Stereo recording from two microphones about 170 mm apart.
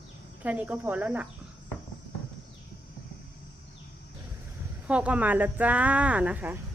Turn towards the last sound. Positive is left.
turn(degrees=-10)  # may be behind; listen again after turning